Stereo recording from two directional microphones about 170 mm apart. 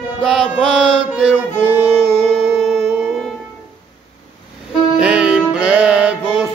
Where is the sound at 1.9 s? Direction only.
5° right (ahead or behind).